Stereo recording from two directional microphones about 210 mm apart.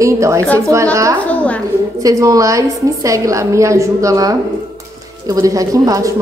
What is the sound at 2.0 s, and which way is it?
Speech, 15° right (ahead or behind).